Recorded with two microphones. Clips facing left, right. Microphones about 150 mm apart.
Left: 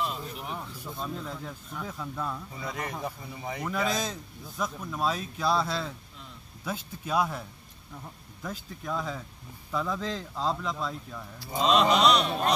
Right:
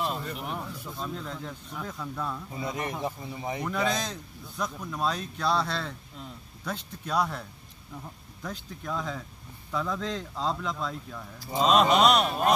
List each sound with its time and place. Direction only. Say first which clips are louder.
0.4 s speech: right 2 dB; 5° right (ahead or behind)
2.5 s speech: right 3 dB; 20° right (ahead or behind)
3.6 s a man's voice: even; centre (ahead or behind)
12.0 s chant: right 1 dB; 50° right (ahead or behind)